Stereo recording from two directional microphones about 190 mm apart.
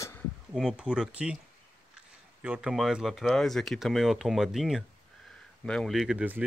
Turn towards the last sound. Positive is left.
turn(degrees=-5)  # may be behind; listen again after turning